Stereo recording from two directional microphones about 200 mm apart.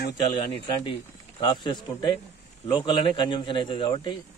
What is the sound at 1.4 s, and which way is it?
A man's voice, 25° left (ahead or behind).